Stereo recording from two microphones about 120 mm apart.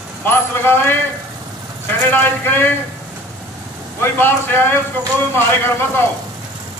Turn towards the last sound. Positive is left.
turn(degrees=20)  # may be behind; listen again after turning